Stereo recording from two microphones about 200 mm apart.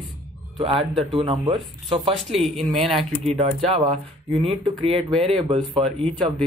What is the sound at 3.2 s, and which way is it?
Speech, 30° right (ahead or behind).